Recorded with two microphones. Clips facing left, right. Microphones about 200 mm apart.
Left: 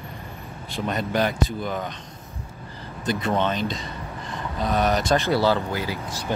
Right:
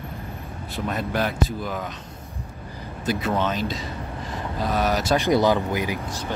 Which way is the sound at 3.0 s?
5° right (ahead or behind).